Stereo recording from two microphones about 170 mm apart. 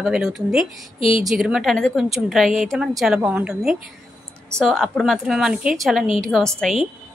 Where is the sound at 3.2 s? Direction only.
10° right (ahead or behind).